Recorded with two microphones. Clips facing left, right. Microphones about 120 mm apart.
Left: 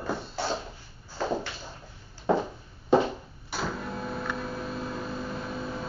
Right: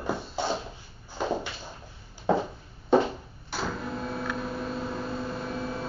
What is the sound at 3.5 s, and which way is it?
Power windows, centre (ahead or behind).